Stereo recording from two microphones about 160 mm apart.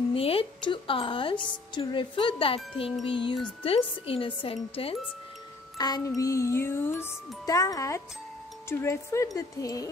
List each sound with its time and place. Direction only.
0.1 s a woman's voice: 35° left (ahead or behind)
5.8 s music: 25° left (ahead or behind)
7.4 s speech: 20° left (ahead or behind)